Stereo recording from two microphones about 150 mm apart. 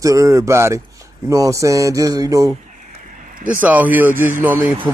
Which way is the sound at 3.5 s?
10° right (ahead or behind).